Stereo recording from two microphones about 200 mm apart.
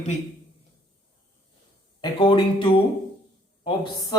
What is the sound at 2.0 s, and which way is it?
Speech, 25° left (ahead or behind).